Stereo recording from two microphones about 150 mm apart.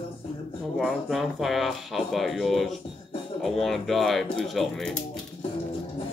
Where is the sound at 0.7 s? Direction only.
Centre (ahead or behind).